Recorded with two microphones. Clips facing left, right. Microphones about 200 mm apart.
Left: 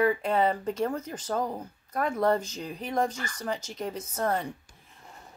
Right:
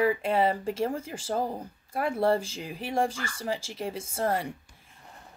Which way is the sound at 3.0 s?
30° right (ahead or behind).